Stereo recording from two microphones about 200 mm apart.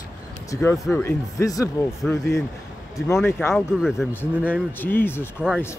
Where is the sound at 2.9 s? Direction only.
15° left (ahead or behind).